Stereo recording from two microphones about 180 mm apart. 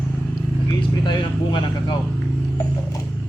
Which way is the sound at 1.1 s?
25° left (ahead or behind).